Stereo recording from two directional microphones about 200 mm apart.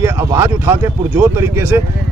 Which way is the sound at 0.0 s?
15° right (ahead or behind).